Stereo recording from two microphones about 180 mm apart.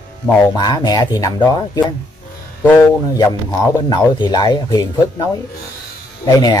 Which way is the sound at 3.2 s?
20° left (ahead or behind).